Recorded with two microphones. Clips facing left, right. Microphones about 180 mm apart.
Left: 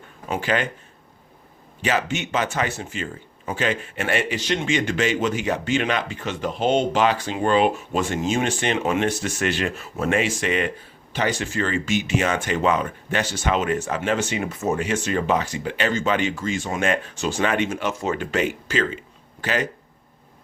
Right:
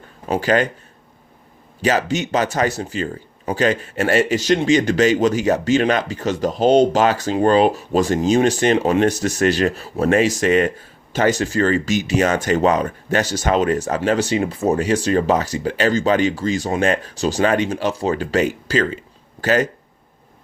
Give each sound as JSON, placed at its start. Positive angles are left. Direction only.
{"t": 0.3, "sound": "speech", "side_deg": -40}
{"t": 1.8, "sound": "speech", "side_deg": -40}